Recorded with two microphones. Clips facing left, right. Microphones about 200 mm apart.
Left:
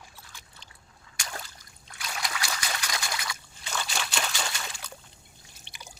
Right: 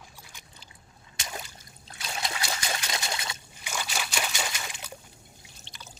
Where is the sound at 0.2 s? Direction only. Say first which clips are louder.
Right 1 dB; 15° right (ahead or behind).